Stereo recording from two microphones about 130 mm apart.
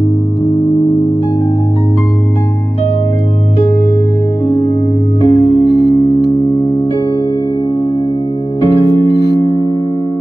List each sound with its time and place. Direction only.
5.2 s music: 40° left (ahead or behind)